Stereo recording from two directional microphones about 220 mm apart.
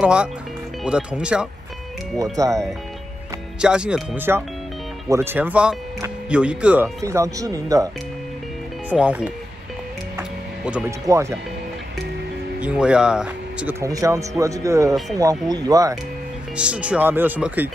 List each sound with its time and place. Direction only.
0.0 s speech: 5° right (ahead or behind)
2.3 s speech: 15° right (ahead or behind)
3.6 s speech: 5° right (ahead or behind)
10.1 s music: 10° right (ahead or behind)
11.1 s speech: 15° right (ahead or behind)
12.5 s speech: 5° right (ahead or behind)
16.5 s speech: 5° right (ahead or behind)